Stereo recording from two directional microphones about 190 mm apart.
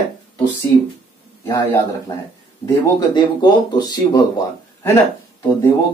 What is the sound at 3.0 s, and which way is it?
Speech, 20° left (ahead or behind).